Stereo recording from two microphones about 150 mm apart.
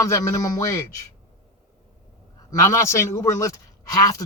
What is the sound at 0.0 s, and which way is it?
Speech, 20° left (ahead or behind).